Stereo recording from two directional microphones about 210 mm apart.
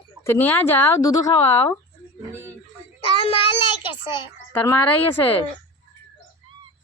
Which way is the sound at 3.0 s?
25° left (ahead or behind).